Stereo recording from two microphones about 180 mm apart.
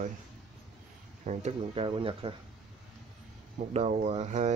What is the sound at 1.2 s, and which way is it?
Speech, 40° right (ahead or behind).